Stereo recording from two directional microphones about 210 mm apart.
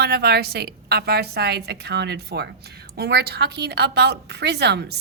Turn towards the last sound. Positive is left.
turn(degrees=-50)  # may be behind; listen again after turning